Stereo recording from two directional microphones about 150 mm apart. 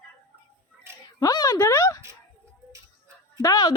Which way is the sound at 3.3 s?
25° left (ahead or behind).